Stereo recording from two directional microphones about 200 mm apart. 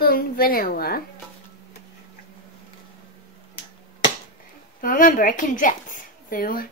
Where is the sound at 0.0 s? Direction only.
50° left (ahead or behind).